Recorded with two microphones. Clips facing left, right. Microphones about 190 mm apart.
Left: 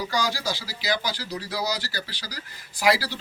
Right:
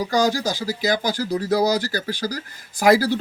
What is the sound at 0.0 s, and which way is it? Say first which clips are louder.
Speech: right 7 dB; 45° right (ahead or behind).